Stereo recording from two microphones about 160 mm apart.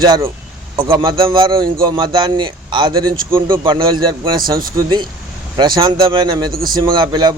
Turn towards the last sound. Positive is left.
turn(degrees=-25)  # may be behind; listen again after turning